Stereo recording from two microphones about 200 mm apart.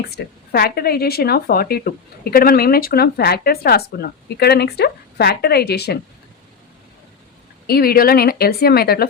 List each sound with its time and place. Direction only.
0.1 s speech: 55° left (ahead or behind)
7.7 s speech: 50° left (ahead or behind)